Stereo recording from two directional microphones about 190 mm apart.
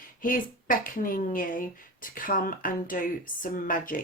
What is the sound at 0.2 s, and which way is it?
Speech, 45° left (ahead or behind).